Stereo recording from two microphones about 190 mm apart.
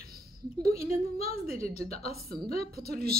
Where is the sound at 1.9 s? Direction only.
35° left (ahead or behind).